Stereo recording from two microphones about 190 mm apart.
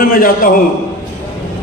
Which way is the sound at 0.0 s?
50° left (ahead or behind).